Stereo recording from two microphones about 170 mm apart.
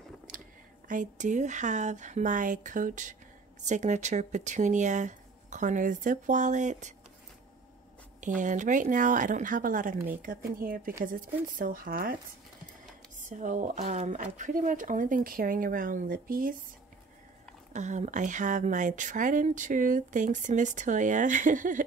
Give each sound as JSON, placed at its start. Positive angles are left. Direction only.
{"t": 0.8, "sound": "speech", "side_deg": -50}
{"t": 8.2, "sound": "speech", "side_deg": -45}
{"t": 13.3, "sound": "speech", "side_deg": -50}
{"t": 17.7, "sound": "speech", "side_deg": -45}